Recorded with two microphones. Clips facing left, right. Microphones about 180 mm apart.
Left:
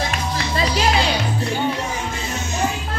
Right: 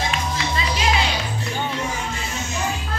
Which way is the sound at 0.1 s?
35° left (ahead or behind).